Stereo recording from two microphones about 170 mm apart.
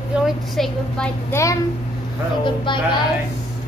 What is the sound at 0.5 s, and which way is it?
Speech, 5° left (ahead or behind).